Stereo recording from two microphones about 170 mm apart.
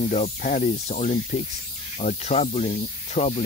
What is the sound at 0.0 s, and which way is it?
Speech, 45° left (ahead or behind).